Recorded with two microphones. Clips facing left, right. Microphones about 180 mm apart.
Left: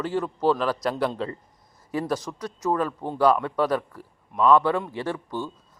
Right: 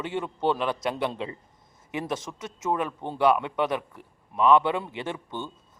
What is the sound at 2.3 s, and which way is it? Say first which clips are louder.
Speech: left 2 dB; 25° right (ahead or behind).